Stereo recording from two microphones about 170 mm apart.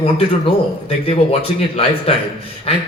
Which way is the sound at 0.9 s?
35° left (ahead or behind).